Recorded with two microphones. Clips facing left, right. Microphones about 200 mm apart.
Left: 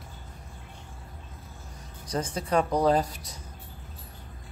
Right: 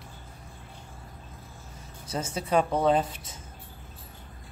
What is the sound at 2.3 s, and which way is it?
Speech, 25° right (ahead or behind).